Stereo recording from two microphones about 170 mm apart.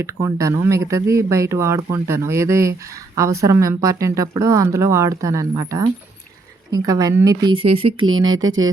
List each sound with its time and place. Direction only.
0.0 s speech: 20° right (ahead or behind)
7.4 s speech: 35° right (ahead or behind)